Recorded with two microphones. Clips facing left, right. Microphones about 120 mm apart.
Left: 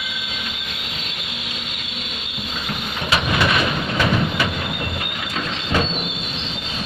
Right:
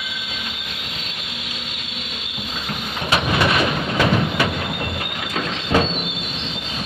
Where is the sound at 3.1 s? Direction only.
30° right (ahead or behind).